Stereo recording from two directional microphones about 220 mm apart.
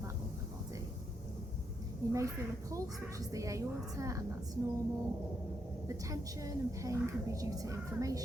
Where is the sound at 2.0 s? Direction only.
15° right (ahead or behind).